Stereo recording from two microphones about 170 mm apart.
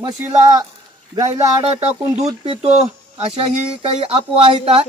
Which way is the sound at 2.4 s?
35° right (ahead or behind).